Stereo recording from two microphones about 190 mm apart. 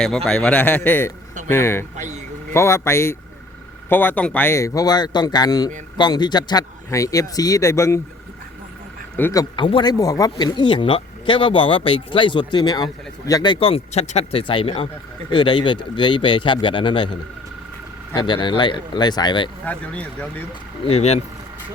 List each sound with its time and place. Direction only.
0.3 s speech: 5° left (ahead or behind)
9.1 s speech: 15° left (ahead or behind)
18.1 s speech: 25° left (ahead or behind)
19.6 s speech: 5° left (ahead or behind)
20.8 s speech: 35° left (ahead or behind)